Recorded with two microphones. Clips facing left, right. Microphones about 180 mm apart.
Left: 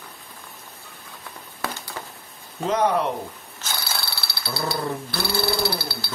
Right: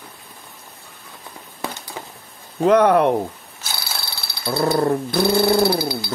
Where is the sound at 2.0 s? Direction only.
15° right (ahead or behind).